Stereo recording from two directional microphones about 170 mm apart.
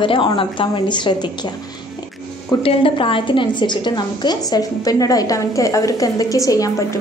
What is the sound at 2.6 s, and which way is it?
A woman's voice, 30° left (ahead or behind).